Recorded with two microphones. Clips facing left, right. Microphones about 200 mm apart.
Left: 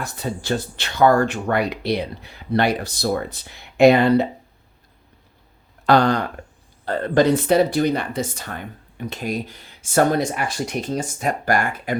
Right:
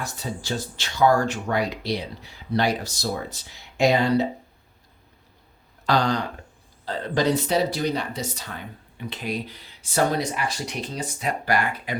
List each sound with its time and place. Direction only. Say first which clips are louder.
0.0 s speech: left 4 dB; 60° left (ahead or behind)
5.8 s speech: left 6 dB; 55° left (ahead or behind)